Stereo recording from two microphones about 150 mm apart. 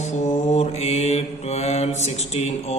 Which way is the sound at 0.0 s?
50° left (ahead or behind).